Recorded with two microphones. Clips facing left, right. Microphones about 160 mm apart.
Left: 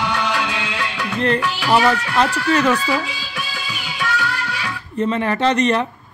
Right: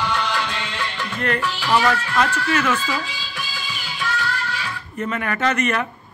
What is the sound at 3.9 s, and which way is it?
Music, 85° left.